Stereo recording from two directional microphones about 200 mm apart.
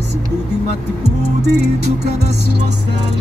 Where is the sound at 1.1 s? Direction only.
55° right (ahead or behind).